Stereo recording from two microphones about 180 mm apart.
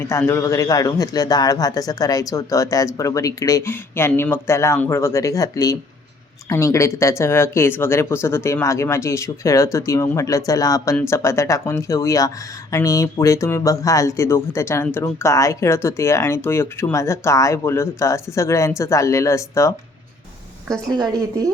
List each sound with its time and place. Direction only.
0.0 s a man's voice: 15° left (ahead or behind)
20.9 s a woman's voice: 20° right (ahead or behind)